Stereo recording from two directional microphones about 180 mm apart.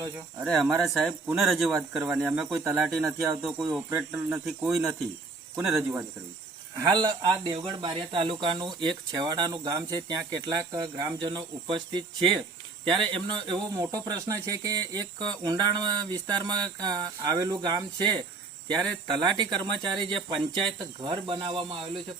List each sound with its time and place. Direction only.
0.4 s speech: centre (ahead or behind)
3.8 s speech: 15° right (ahead or behind)
4.4 s speech: centre (ahead or behind)
5.7 s speech: 15° right (ahead or behind)